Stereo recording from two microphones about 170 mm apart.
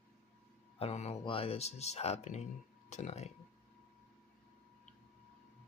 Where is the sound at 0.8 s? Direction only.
35° left (ahead or behind).